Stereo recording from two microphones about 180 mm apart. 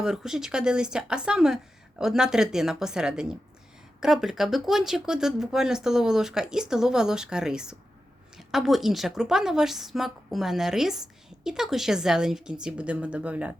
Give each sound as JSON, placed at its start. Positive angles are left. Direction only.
{"t": 0.0, "sound": "a woman's voice", "side_deg": -5}